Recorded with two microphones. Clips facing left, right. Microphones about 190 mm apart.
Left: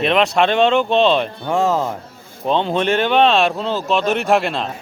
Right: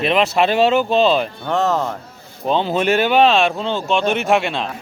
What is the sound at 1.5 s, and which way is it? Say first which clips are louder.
Speech: left 1 dB; 10° left (ahead or behind).